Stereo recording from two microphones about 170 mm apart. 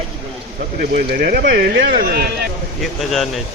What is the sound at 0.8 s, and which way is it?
Speech, 65° right (ahead or behind).